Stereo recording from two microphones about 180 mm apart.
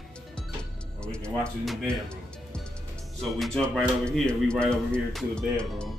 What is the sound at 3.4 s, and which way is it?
Speech, 5° left (ahead or behind).